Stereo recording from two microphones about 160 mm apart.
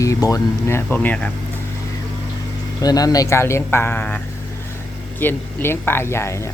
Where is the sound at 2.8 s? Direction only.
25° left (ahead or behind).